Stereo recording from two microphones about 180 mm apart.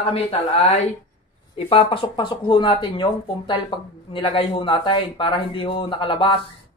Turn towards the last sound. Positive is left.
turn(degrees=25)  # may be behind; listen again after turning